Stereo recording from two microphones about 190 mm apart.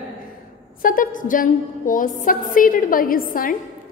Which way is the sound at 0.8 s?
45° left (ahead or behind).